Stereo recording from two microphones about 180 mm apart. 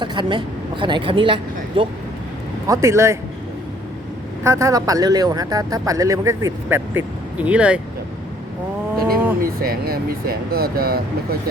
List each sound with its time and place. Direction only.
0.0 s speech: 25° right (ahead or behind)
2.6 s speech: 15° right (ahead or behind)
4.4 s speech: 15° right (ahead or behind)
9.4 s speech: 55° right (ahead or behind)